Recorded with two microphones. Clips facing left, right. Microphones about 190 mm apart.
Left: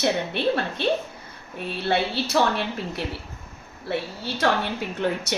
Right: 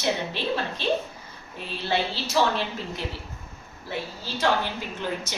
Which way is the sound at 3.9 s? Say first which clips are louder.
Left 5 dB; 65° left (ahead or behind).